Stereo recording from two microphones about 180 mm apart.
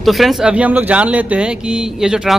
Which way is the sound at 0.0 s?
Centre (ahead or behind).